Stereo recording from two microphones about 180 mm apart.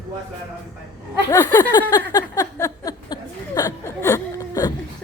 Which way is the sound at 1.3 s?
15° left (ahead or behind).